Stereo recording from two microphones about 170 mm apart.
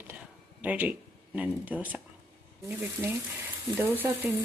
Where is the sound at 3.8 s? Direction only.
10° right (ahead or behind).